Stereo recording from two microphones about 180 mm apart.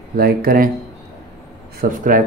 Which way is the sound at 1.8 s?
50° right (ahead or behind).